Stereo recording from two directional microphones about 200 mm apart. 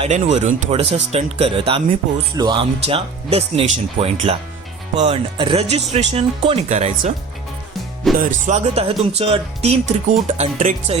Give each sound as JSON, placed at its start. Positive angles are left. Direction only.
{"t": 0.0, "sound": "speech", "side_deg": -35}
{"t": 8.2, "sound": "speech", "side_deg": -35}